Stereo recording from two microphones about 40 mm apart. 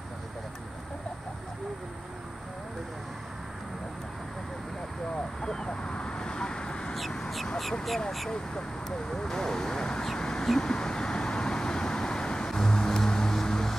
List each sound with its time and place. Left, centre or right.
5.4 s vehicle: centre
8.3 s speech: centre
10.1 s a sound: centre
10.5 s vehicle: centre